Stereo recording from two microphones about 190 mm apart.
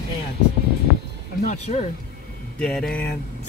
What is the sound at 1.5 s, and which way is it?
Speech, 35° left (ahead or behind).